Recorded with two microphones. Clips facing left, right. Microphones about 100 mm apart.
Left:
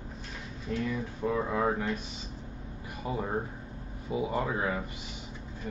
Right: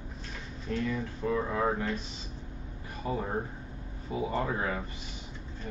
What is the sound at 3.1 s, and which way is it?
Speech, 15° left (ahead or behind).